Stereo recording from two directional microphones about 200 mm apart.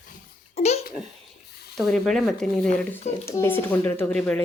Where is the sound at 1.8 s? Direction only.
Centre (ahead or behind).